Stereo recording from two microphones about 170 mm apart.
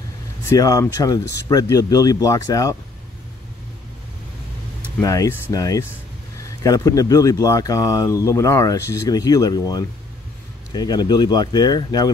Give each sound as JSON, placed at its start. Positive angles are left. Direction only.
{"t": 0.5, "sound": "speech", "side_deg": 20}
{"t": 5.0, "sound": "speech", "side_deg": 20}